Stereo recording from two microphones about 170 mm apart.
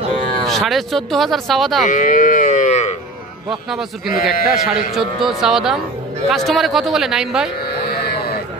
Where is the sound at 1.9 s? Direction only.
50° left (ahead or behind).